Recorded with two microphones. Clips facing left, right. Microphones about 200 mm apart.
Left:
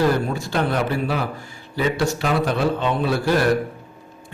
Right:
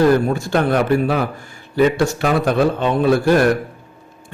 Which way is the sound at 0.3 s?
50° right (ahead or behind).